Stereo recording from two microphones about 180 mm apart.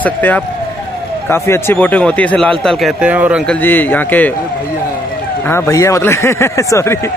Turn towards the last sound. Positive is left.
turn(degrees=15)  # may be behind; listen again after turning